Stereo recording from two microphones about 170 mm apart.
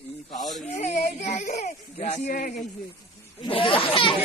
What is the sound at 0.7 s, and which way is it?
Speech, 40° left (ahead or behind).